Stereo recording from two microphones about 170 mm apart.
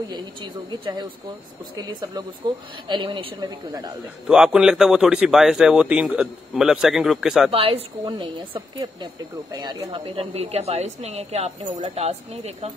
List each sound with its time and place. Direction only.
0.1 s a woman's voice: 25° right (ahead or behind)
4.3 s speech: 5° right (ahead or behind)
7.5 s a woman's voice: 35° right (ahead or behind)
9.8 s a woman's voice: 35° right (ahead or behind)